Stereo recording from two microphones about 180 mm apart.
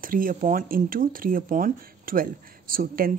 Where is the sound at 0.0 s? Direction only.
50° right (ahead or behind).